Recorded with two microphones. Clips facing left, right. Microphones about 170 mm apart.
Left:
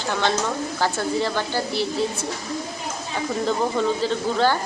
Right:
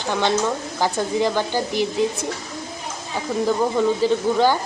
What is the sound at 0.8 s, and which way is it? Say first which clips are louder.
A woman's voice: right 3 dB; 15° right (ahead or behind).